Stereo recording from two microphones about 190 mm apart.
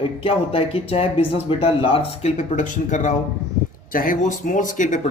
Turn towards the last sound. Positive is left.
turn(degrees=40)  # may be behind; listen again after turning